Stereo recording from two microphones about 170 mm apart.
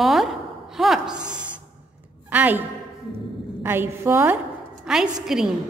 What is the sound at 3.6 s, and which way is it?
A woman's voice, 15° right (ahead or behind).